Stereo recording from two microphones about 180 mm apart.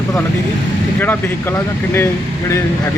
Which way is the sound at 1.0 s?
10° left (ahead or behind).